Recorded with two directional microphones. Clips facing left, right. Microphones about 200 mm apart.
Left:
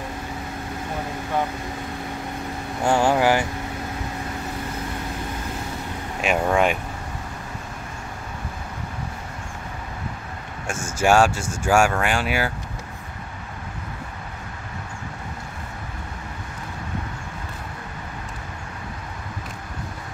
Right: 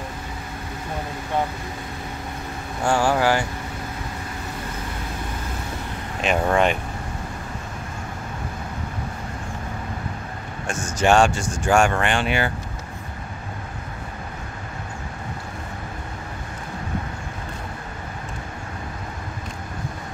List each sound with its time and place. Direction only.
2.8 s speech: 20° left (ahead or behind)
6.2 s speech: 5° left (ahead or behind)
11.0 s speech: 5° left (ahead or behind)